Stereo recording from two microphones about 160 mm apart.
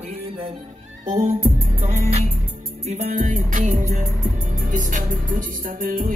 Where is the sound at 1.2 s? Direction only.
40° right (ahead or behind).